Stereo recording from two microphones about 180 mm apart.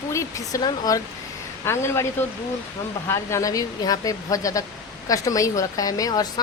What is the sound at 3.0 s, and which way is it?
A woman's voice, 15° left (ahead or behind).